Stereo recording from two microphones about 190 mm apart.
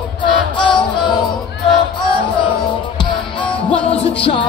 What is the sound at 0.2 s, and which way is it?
Music, 25° left (ahead or behind).